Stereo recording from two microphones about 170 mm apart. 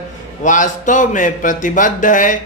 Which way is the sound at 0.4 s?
50° left (ahead or behind).